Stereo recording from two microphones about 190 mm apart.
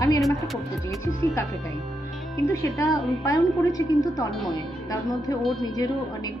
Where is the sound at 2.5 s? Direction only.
15° left (ahead or behind).